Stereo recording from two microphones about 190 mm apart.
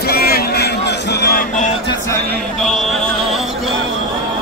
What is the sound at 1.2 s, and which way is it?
Vehicle, 50° left (ahead or behind).